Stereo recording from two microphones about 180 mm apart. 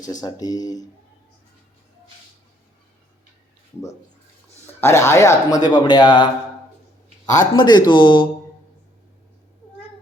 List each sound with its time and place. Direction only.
0.2 s speech: 20° left (ahead or behind)
4.6 s speech: 15° left (ahead or behind)
7.3 s speech: 20° left (ahead or behind)